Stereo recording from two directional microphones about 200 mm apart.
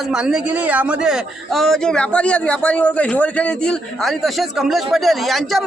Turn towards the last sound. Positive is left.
turn(degrees=0)  # may be behind; listen again after turning